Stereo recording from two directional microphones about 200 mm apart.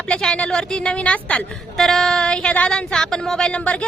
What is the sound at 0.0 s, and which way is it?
A woman's voice, 5° left (ahead or behind).